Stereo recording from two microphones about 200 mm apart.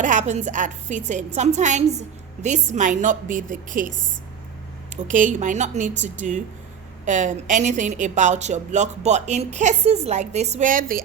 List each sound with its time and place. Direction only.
0.0 s a woman's voice: 40° right (ahead or behind)
4.9 s a woman's voice: 40° right (ahead or behind)